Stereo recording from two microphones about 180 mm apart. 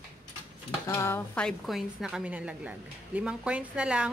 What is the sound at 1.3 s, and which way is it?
A woman's voice, centre (ahead or behind).